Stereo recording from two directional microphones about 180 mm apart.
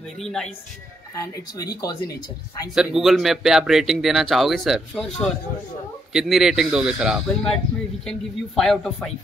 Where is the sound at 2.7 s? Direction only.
5° right (ahead or behind).